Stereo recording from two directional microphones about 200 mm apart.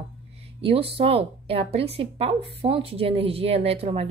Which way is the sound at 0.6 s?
30° right (ahead or behind).